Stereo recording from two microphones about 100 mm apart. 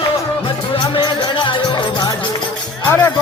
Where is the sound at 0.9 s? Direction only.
55° left (ahead or behind).